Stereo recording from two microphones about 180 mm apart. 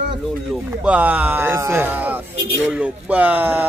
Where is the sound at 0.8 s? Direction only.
10° right (ahead or behind).